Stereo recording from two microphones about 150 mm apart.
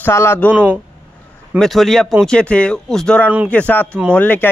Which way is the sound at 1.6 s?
Centre (ahead or behind).